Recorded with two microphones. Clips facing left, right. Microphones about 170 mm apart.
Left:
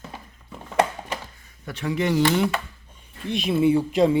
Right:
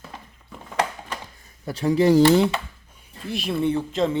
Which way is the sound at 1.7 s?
35° right (ahead or behind).